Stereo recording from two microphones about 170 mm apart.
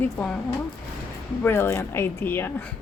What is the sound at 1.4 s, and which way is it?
A woman's voice, 15° left (ahead or behind).